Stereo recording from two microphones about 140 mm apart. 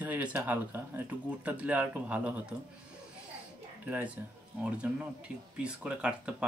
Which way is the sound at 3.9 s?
10° right (ahead or behind).